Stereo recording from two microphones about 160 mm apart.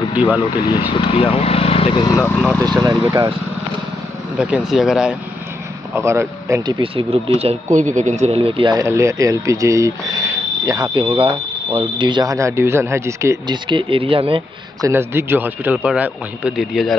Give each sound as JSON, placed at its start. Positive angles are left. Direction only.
{"t": 0.1, "sound": "speech", "side_deg": -10}
{"t": 0.9, "sound": "speech", "side_deg": 35}
{"t": 2.8, "sound": "speech", "side_deg": -25}
{"t": 4.4, "sound": "speech", "side_deg": -5}
{"t": 5.9, "sound": "a man's voice", "side_deg": -15}
{"t": 6.8, "sound": "speech", "side_deg": -35}
{"t": 7.7, "sound": "speech", "side_deg": -50}
{"t": 8.7, "sound": "speech", "side_deg": -20}
{"t": 11.0, "sound": "a man's voice", "side_deg": -35}
{"t": 13.7, "sound": "speech", "side_deg": -30}
{"t": 14.8, "sound": "a man's voice", "side_deg": -15}